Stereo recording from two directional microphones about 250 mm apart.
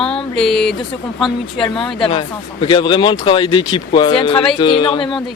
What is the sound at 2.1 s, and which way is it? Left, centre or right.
Speech, left.